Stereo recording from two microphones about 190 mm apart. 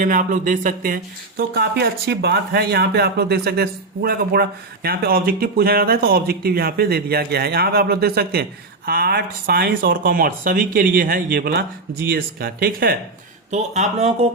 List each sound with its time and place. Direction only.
0.0 s speech: 45° right (ahead or behind)
13.5 s speech: 35° right (ahead or behind)